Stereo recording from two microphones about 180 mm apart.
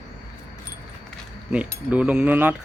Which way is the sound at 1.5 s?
5° right (ahead or behind).